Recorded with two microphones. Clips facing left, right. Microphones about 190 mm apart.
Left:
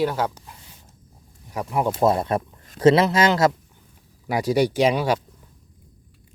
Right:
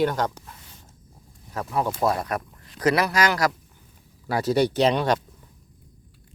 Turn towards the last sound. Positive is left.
turn(degrees=10)  # may be behind; listen again after turning